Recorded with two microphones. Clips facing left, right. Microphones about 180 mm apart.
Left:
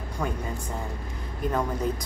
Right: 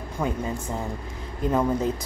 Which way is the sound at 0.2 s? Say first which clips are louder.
Right 3 dB; 20° right (ahead or behind).